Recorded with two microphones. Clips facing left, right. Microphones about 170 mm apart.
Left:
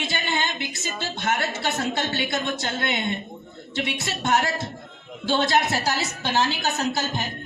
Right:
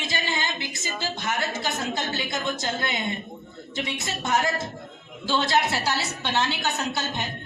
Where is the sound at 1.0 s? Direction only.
65° left (ahead or behind).